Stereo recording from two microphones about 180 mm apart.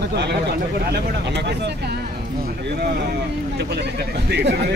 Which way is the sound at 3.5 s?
65° right (ahead or behind).